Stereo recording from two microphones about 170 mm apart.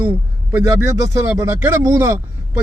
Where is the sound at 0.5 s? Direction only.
15° right (ahead or behind).